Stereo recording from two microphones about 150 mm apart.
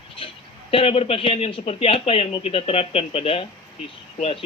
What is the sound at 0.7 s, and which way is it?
Speech, 40° left (ahead or behind).